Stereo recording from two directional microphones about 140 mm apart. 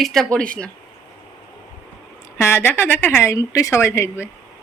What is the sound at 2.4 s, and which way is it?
A woman's voice, 15° left (ahead or behind).